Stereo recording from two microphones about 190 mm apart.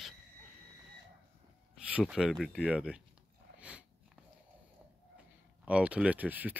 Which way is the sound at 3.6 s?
5° right (ahead or behind).